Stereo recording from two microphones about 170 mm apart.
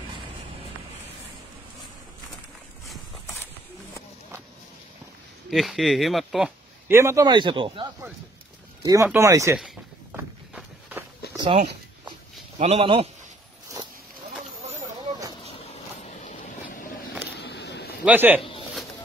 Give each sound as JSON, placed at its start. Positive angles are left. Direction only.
{"t": 5.5, "sound": "speech", "side_deg": 0}
{"t": 6.9, "sound": "speech", "side_deg": -15}
{"t": 8.8, "sound": "speech", "side_deg": -15}
{"t": 10.1, "sound": "walk", "side_deg": -10}
{"t": 11.3, "sound": "a sound", "side_deg": -30}
{"t": 12.5, "sound": "speech", "side_deg": -35}
{"t": 17.3, "sound": "a sound", "side_deg": 85}
{"t": 18.0, "sound": "speech", "side_deg": -10}